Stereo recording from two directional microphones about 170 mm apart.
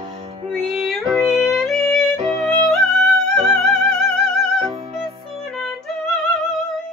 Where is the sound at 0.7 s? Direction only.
Centre (ahead or behind).